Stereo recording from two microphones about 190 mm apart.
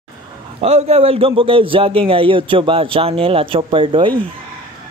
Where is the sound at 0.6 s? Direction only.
35° right (ahead or behind).